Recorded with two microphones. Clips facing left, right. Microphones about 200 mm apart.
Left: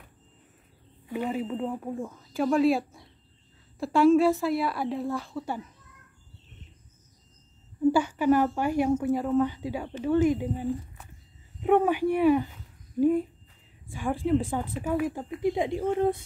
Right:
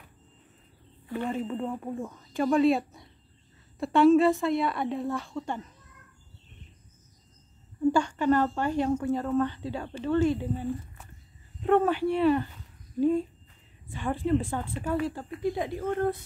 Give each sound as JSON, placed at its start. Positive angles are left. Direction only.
{"t": 1.0, "sound": "speech", "side_deg": 15}
{"t": 7.8, "sound": "speech", "side_deg": 5}